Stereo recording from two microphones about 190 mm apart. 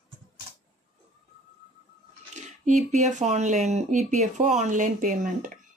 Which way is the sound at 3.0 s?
40° right (ahead or behind).